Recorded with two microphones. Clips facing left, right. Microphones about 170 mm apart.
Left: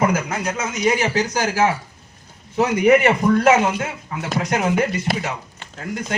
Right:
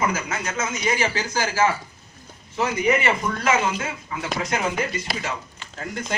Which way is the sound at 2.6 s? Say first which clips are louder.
Left 7 dB; 55° left (ahead or behind).